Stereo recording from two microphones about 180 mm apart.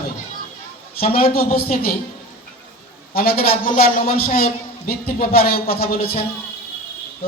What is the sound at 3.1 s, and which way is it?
A man's voice, 55° left (ahead or behind).